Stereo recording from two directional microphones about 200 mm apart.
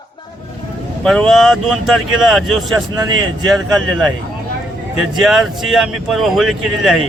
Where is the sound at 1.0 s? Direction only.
5° left (ahead or behind).